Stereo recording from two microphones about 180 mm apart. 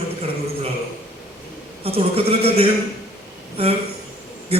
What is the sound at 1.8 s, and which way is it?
Speech, 35° right (ahead or behind).